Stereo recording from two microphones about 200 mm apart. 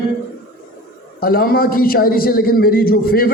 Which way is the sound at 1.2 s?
45° left (ahead or behind).